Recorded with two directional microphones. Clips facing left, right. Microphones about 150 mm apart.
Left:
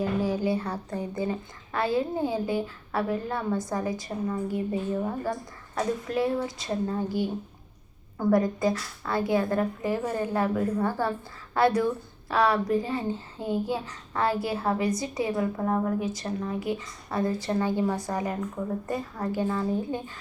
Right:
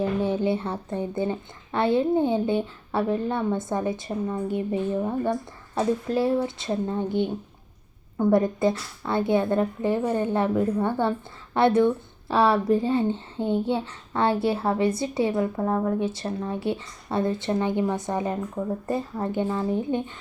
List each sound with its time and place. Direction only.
0.0 s speech: 25° right (ahead or behind)